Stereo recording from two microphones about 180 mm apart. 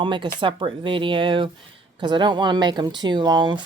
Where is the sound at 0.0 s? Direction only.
25° right (ahead or behind).